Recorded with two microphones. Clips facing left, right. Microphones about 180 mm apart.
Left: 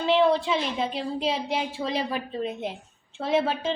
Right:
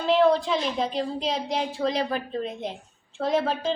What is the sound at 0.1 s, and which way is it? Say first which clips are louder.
A woman's voice: right 1 dB; centre (ahead or behind).